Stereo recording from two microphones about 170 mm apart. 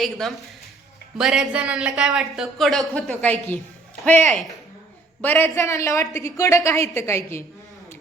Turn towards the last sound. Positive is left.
turn(degrees=15)  # may be behind; listen again after turning